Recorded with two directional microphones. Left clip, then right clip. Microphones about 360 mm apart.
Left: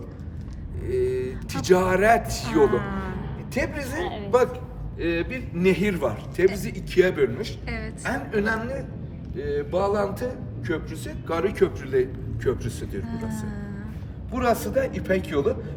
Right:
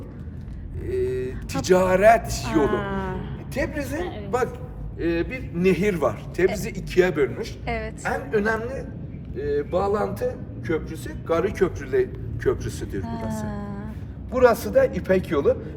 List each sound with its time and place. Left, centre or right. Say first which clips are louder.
0.9 s a man's voice: left 1 dB; centre
4.0 s a man's voice: left 2 dB; left
4.9 s a man's voice: right 1 dB; centre